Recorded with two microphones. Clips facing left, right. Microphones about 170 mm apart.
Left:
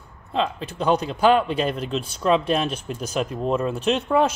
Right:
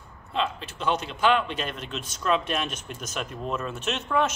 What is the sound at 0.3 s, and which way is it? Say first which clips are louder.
A man's voice: left 4 dB; 35° left (ahead or behind).